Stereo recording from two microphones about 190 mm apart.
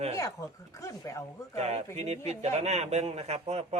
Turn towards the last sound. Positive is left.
turn(degrees=-35)  # may be behind; listen again after turning